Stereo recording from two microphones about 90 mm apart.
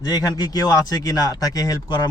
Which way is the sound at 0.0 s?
45° left (ahead or behind).